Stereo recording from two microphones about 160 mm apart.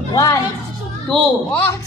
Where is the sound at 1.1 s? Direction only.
10° left (ahead or behind).